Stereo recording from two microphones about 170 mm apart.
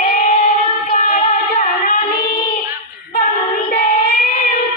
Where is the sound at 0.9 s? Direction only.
50° left (ahead or behind).